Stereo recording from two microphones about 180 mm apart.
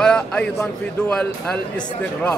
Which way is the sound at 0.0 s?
5° left (ahead or behind).